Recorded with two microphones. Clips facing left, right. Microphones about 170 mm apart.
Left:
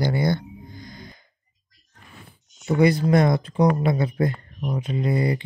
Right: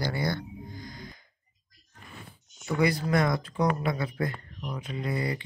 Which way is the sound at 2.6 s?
25° left (ahead or behind).